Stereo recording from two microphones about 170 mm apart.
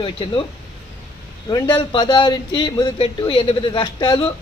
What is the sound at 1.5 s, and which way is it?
A man's voice, 30° left (ahead or behind).